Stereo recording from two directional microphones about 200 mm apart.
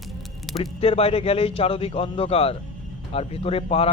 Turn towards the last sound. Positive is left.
turn(degrees=30)  # may be behind; listen again after turning